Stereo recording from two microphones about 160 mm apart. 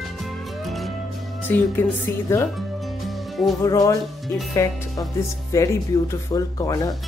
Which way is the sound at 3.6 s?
20° left (ahead or behind).